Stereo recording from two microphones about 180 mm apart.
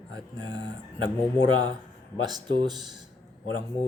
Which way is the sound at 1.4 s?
25° right (ahead or behind).